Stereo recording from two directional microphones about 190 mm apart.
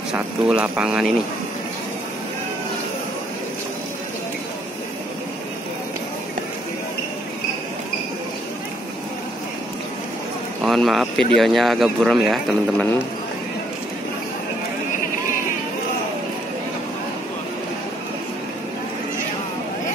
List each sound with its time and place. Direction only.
0.1 s speech: 5° right (ahead or behind)
10.6 s a sound: centre (ahead or behind)
11.3 s speech: centre (ahead or behind)